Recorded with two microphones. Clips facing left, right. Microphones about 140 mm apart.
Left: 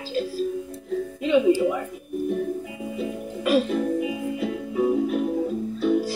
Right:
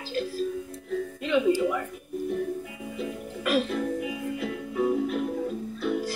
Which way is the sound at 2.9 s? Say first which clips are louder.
Left 3 dB; 15° left (ahead or behind).